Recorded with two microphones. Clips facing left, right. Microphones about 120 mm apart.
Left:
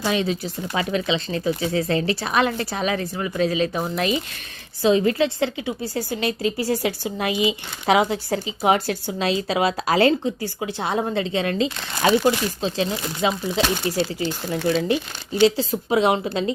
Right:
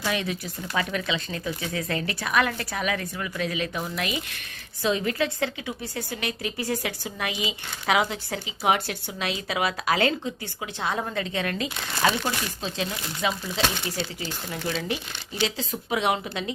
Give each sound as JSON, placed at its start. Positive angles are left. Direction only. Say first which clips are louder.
{"t": 0.0, "sound": "a woman's voice", "louder": "left 6 dB", "side_deg": 25}
{"t": 13.8, "sound": "speech", "louder": "left 8 dB", "side_deg": 45}
{"t": 15.4, "sound": "a woman's voice", "louder": "left 11 dB", "side_deg": 35}